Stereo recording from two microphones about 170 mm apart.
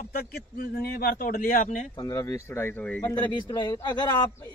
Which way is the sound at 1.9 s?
20° left (ahead or behind).